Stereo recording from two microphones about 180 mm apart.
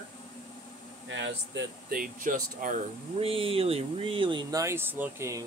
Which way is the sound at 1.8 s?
50° right (ahead or behind).